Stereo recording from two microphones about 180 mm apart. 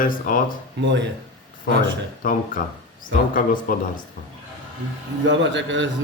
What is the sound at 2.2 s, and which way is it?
Speech, 50° left (ahead or behind).